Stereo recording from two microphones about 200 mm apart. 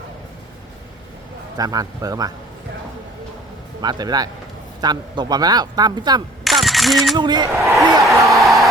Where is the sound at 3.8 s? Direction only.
20° right (ahead or behind).